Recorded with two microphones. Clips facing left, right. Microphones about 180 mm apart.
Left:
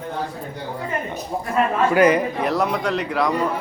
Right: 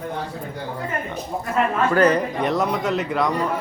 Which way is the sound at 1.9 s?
10° left (ahead or behind).